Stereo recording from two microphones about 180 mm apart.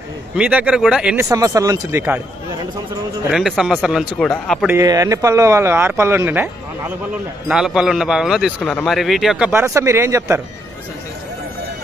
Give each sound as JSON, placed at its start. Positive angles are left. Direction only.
{"t": 0.4, "sound": "speech", "side_deg": -10}
{"t": 1.3, "sound": "speech", "side_deg": -20}
{"t": 3.3, "sound": "a man's voice", "side_deg": 0}
{"t": 4.6, "sound": "a man's voice", "side_deg": -15}
{"t": 9.5, "sound": "speech", "side_deg": -15}